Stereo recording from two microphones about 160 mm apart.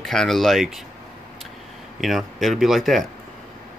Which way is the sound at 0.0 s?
Centre (ahead or behind).